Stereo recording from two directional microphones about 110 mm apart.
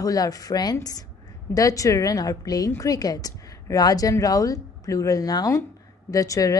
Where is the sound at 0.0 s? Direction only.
35° left (ahead or behind).